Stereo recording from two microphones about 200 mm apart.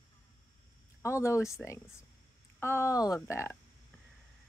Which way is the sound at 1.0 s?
15° left (ahead or behind).